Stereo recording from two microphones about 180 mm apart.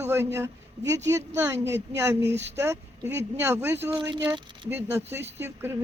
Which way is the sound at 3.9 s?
25° right (ahead or behind).